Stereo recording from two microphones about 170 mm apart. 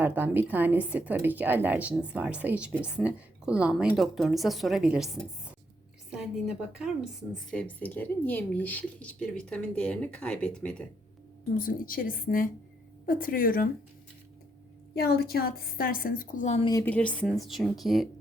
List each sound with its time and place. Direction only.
0.0 s a woman's voice: 10° right (ahead or behind)
7.5 s speech: 10° left (ahead or behind)
11.5 s a woman's voice: 55° left (ahead or behind)
14.9 s a woman's voice: 65° left (ahead or behind); by 16.6 s 45° left (ahead or behind)
16.8 s speech: 10° left (ahead or behind)